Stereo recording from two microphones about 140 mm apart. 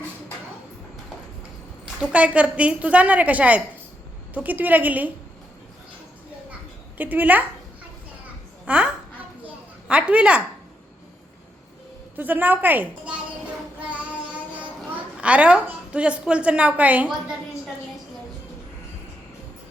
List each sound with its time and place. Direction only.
2.0 s a woman's voice: 10° right (ahead or behind)
6.5 s a sound: 10° right (ahead or behind)
8.6 s a sound: 10° right (ahead or behind)
9.8 s a woman's voice: 10° right (ahead or behind)
12.1 s a woman's voice: 15° right (ahead or behind)
13.8 s child singing: 10° right (ahead or behind)
15.2 s a woman's voice: 10° right (ahead or behind)